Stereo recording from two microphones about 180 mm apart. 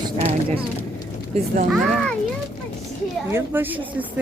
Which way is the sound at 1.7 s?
Centre (ahead or behind).